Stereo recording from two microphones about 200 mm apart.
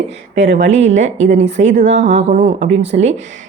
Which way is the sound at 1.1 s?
35° right (ahead or behind).